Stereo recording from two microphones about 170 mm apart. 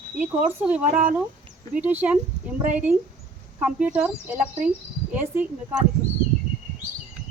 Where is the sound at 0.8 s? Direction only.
50° right (ahead or behind).